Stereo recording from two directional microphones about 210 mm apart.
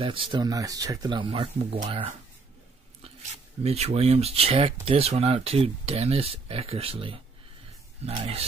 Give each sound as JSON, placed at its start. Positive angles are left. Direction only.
{"t": 0.0, "sound": "speech", "side_deg": -25}
{"t": 3.6, "sound": "speech", "side_deg": -30}